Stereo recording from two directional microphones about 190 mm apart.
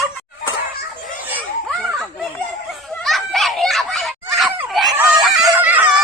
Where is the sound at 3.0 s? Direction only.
Centre (ahead or behind).